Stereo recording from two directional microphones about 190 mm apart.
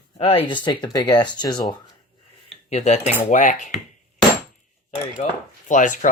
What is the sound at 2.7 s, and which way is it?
Dishes, 35° left (ahead or behind).